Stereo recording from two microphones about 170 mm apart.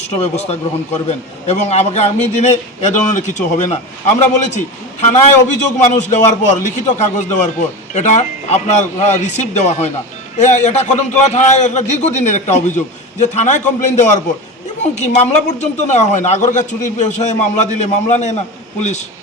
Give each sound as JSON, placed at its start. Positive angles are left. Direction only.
{"t": 0.2, "sound": "a man's voice", "side_deg": 40}